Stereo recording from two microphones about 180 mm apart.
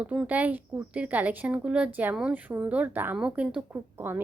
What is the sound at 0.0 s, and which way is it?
A woman's voice, 10° right (ahead or behind).